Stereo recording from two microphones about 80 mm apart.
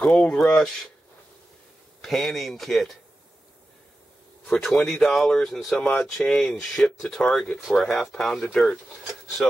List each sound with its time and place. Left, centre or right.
0.0 s speech: centre
2.0 s speech: centre
4.6 s speech: centre
5.8 s speech: centre